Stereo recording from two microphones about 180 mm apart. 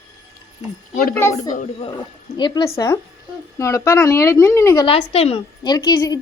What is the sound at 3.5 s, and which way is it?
Speech, 15° left (ahead or behind).